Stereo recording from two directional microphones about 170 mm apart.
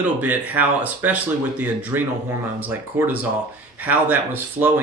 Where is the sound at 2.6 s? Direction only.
10° right (ahead or behind).